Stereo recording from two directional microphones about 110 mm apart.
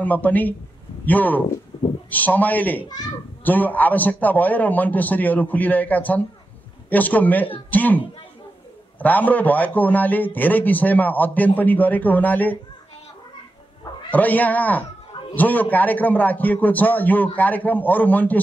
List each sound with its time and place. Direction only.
0.0 s a man's voice: 15° left (ahead or behind)
9.0 s a man's voice: 15° left (ahead or behind)
14.1 s a man's voice: 15° left (ahead or behind)